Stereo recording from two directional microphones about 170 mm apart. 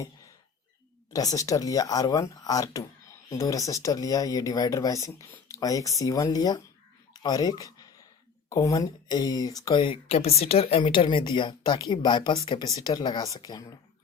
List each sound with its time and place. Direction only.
1.1 s speech: 20° left (ahead or behind)